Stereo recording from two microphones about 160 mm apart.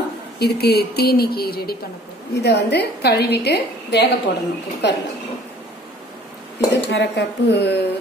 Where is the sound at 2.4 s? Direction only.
90° left.